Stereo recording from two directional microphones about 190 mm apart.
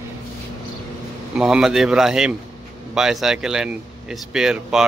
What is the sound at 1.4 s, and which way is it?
A man's voice, 5° right (ahead or behind).